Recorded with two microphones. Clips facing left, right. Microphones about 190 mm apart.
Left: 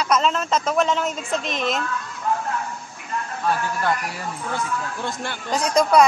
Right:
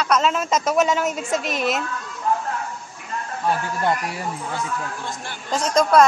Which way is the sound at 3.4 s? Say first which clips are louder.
Right 1 dB; 20° right (ahead or behind).